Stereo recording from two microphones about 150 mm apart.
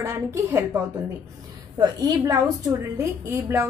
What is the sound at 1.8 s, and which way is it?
A woman's voice, 25° right (ahead or behind).